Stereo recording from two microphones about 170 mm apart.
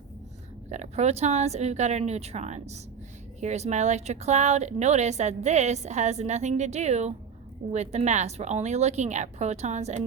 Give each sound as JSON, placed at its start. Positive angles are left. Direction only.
{"t": 0.7, "sound": "a woman's voice", "side_deg": -40}